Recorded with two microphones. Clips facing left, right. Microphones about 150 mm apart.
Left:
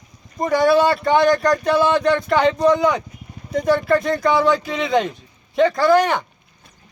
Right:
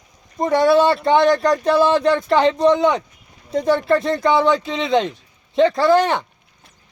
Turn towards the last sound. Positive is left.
turn(degrees=-30)  # may be behind; listen again after turning